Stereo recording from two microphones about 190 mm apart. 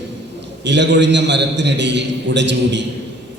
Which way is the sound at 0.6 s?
65° right (ahead or behind).